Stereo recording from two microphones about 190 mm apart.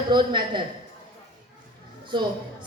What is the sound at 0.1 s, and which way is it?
Speech, 25° right (ahead or behind).